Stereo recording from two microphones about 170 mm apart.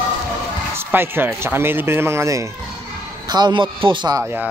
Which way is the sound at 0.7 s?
10° right (ahead or behind).